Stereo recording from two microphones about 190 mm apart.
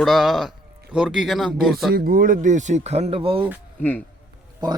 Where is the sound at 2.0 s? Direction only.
50° right (ahead or behind); by 3.5 s 30° right (ahead or behind).